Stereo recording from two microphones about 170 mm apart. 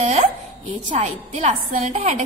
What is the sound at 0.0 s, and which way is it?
A woman's voice, 45° right (ahead or behind).